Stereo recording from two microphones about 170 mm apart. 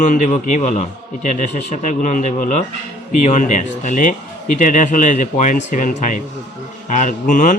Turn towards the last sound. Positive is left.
turn(degrees=50)  # may be behind; listen again after turning